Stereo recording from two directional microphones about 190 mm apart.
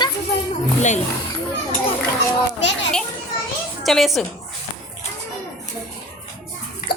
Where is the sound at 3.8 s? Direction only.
Centre (ahead or behind).